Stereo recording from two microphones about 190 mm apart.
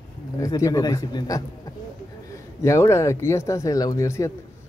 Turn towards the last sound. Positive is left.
turn(degrees=15)  # may be behind; listen again after turning